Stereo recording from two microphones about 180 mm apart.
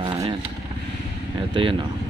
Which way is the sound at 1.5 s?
30° right (ahead or behind).